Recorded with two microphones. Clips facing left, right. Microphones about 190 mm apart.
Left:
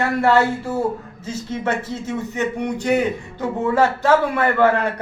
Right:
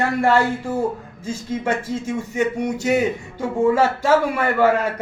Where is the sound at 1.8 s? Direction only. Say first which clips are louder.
Right 1 dB; 10° right (ahead or behind).